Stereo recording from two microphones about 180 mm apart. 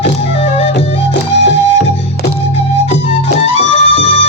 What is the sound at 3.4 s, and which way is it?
Music, 35° left (ahead or behind).